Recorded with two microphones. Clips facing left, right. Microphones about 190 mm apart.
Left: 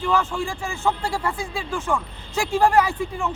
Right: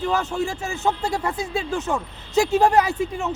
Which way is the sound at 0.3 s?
20° right (ahead or behind).